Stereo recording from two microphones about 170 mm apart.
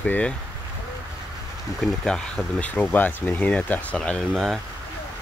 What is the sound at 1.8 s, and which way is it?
Speech, 5° left (ahead or behind).